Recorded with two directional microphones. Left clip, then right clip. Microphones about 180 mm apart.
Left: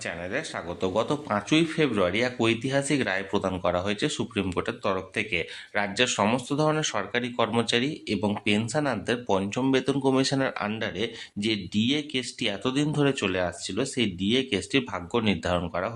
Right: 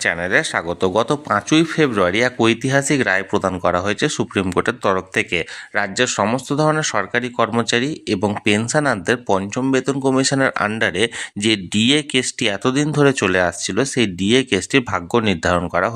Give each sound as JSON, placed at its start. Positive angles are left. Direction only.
{"t": 0.0, "sound": "speech", "side_deg": -50}
{"t": 9.4, "sound": "speech", "side_deg": -20}